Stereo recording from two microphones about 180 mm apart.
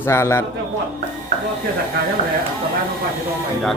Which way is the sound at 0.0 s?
15° left (ahead or behind).